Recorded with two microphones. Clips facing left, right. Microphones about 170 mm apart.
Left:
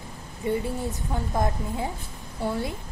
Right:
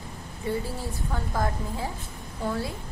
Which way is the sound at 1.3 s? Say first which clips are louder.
Left 2 dB; 20° left (ahead or behind).